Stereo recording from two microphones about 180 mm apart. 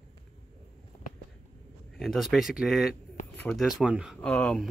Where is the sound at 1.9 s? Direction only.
Centre (ahead or behind).